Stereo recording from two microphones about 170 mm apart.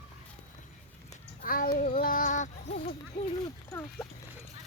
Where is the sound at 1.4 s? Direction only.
60° left (ahead or behind).